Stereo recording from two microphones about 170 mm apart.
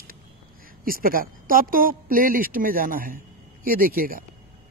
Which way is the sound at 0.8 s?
55° right (ahead or behind).